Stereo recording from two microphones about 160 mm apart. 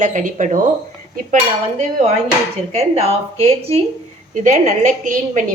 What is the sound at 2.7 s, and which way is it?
Speech, 40° right (ahead or behind).